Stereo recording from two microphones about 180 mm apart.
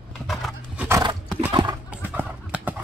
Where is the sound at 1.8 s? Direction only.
10° right (ahead or behind).